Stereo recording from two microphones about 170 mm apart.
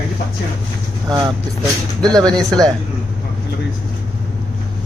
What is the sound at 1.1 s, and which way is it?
Speech, 25° right (ahead or behind).